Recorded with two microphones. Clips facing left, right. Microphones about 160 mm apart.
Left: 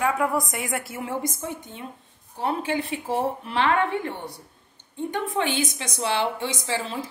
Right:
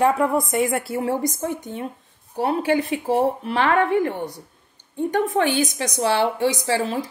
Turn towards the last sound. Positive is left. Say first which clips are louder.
# right 6 dB
turn(degrees=-45)  # may be behind; listen again after turning